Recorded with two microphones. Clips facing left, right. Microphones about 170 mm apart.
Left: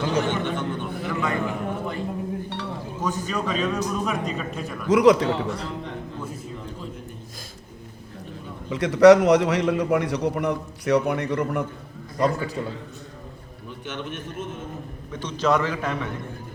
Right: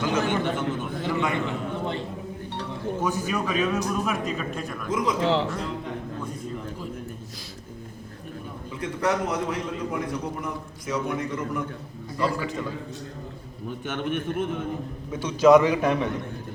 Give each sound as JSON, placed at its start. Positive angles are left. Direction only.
{"t": 0.3, "sound": "a man's voice", "side_deg": -10}
{"t": 1.0, "sound": "a man's voice", "side_deg": -25}
{"t": 3.0, "sound": "a man's voice", "side_deg": -10}
{"t": 4.9, "sound": "a man's voice", "side_deg": 75}
{"t": 5.2, "sound": "speech", "side_deg": -90}
{"t": 8.7, "sound": "a man's voice", "side_deg": 80}
{"t": 12.1, "sound": "a man's voice", "side_deg": 40}
{"t": 13.7, "sound": "a man's voice", "side_deg": -50}
{"t": 15.1, "sound": "a man's voice", "side_deg": -10}